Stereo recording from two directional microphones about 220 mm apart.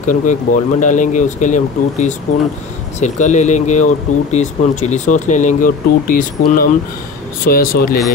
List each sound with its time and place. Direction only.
0.0 s speech: 35° left (ahead or behind)